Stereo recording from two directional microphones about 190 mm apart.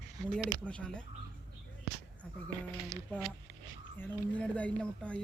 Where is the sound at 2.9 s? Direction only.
15° left (ahead or behind).